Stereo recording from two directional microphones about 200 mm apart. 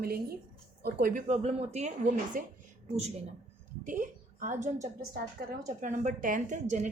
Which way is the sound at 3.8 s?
40° right (ahead or behind).